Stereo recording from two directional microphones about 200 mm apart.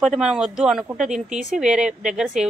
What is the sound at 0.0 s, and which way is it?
Speech, centre (ahead or behind).